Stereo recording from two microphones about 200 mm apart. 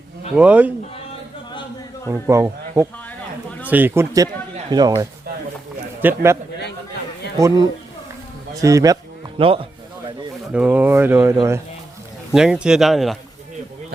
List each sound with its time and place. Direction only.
0.3 s speech: 5° right (ahead or behind)
2.0 s speech: 15° right (ahead or behind)
7.3 s speech: 15° right (ahead or behind)
10.5 s speech: 5° right (ahead or behind)
12.3 s speech: 5° right (ahead or behind)